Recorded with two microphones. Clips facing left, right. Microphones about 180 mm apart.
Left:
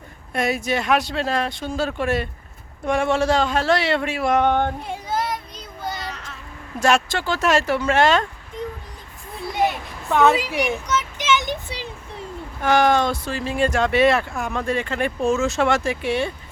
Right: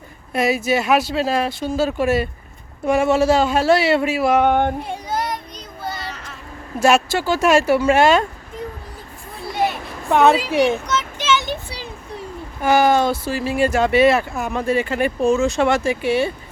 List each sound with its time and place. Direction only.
0.3 s speech: 5° right (ahead or behind)
4.8 s child singing: centre (ahead or behind)
6.0 s a sound: centre (ahead or behind)
6.7 s speech: 10° right (ahead or behind)
10.1 s a woman's voice: 20° right (ahead or behind)
10.8 s a sound: 15° left (ahead or behind)
12.6 s speech: 5° right (ahead or behind)